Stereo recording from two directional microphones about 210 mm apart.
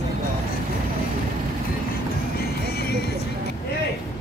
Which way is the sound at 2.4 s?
50° left (ahead or behind).